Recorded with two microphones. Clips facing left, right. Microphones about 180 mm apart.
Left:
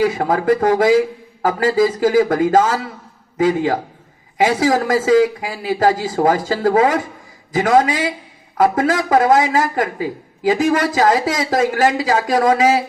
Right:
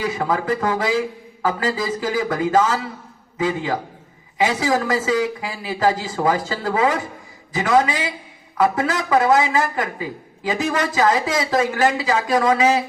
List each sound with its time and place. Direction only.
0.0 s a man's voice: 50° left (ahead or behind)